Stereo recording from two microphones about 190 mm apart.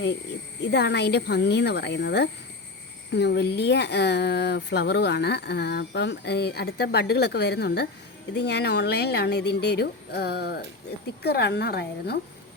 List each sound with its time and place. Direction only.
0.6 s speech: 65° left (ahead or behind)